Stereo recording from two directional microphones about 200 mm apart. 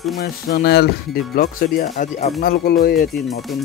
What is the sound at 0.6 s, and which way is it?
Speech, 55° left (ahead or behind).